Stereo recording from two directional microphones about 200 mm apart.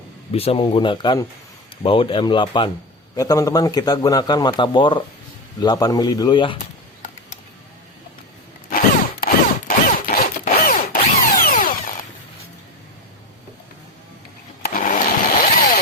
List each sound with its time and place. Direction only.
0.3 s a man's voice: 30° left (ahead or behind)
9.2 s drill: 45° left (ahead or behind)
14.6 s blender: 45° left (ahead or behind)
15.4 s vehicle: 45° left (ahead or behind)